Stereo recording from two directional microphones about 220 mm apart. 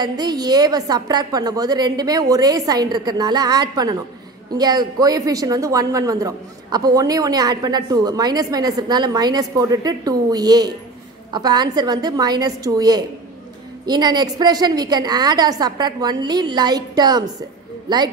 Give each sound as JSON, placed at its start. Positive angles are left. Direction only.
{"t": 0.0, "sound": "a man's voice", "side_deg": -20}